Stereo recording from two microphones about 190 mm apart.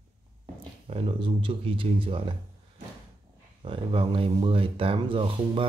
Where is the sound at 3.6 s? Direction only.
25° right (ahead or behind).